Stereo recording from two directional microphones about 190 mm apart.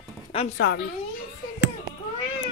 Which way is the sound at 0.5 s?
60° left (ahead or behind).